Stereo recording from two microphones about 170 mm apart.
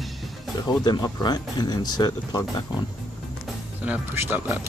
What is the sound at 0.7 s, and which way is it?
Speech, 25° left (ahead or behind).